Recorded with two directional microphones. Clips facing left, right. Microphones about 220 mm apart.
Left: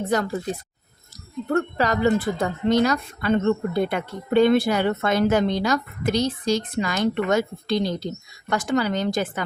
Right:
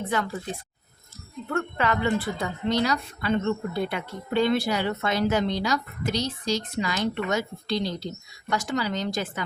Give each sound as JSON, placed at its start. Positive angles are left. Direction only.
{"t": 0.0, "sound": "speech", "side_deg": 40}
{"t": 1.5, "sound": "speech", "side_deg": 40}